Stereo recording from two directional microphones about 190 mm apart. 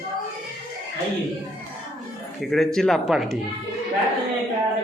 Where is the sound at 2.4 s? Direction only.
Centre (ahead or behind).